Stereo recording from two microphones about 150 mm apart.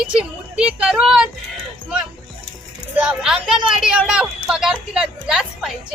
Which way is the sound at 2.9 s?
5° right (ahead or behind).